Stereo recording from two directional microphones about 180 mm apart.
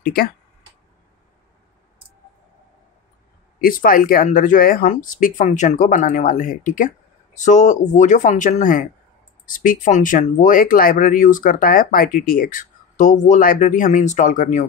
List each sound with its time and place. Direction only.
0.0 s speech: 55° left (ahead or behind)
3.6 s speech: 50° left (ahead or behind)